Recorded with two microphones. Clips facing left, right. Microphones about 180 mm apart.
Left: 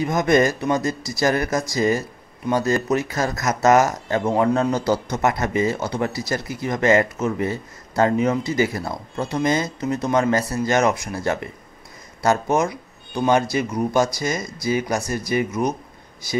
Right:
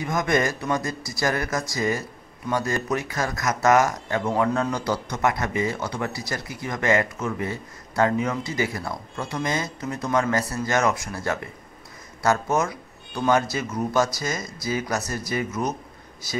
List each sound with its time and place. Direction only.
0.0 s a man's voice: 25° left (ahead or behind)
12.2 s speech: 15° left (ahead or behind)